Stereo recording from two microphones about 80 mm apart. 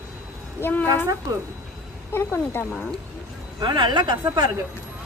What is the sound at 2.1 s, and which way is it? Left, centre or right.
Speech, left.